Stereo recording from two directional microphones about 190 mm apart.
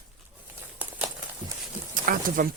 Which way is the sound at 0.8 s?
5° right (ahead or behind).